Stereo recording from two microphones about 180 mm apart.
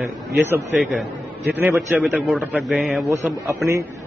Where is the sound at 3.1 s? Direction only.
15° right (ahead or behind).